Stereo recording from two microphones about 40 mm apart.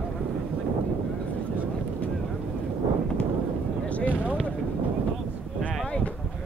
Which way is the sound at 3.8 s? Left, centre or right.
Left.